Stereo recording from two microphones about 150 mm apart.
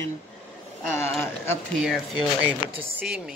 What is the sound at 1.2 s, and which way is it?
Speech, 15° left (ahead or behind).